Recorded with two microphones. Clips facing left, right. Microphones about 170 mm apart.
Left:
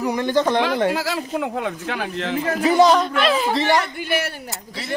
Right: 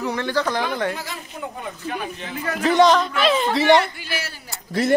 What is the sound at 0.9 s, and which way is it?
Speech, 90° left.